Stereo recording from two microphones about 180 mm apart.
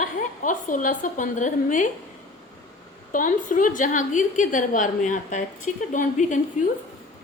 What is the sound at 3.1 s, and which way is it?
A woman's voice, 50° left (ahead or behind).